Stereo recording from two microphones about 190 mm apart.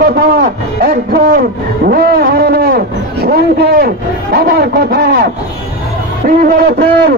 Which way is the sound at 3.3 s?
55° right (ahead or behind).